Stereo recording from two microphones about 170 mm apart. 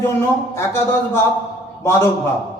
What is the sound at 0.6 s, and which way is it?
Speech, 15° left (ahead or behind).